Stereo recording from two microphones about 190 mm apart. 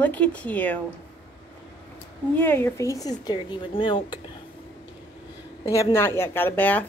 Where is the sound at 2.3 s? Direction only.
10° left (ahead or behind).